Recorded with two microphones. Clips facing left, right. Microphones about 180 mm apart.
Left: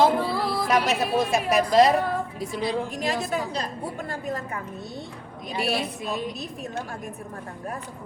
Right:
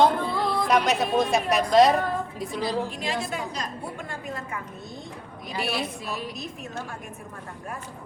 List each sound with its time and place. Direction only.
0.0 s a woman's voice: 5° left (ahead or behind)
3.2 s a woman's voice: 35° left (ahead or behind)
4.1 s a sound: 40° left (ahead or behind)
5.5 s a woman's voice: centre (ahead or behind)
6.1 s a woman's voice: 20° left (ahead or behind)